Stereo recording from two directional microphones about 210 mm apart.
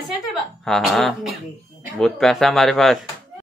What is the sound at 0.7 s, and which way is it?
Speech, centre (ahead or behind).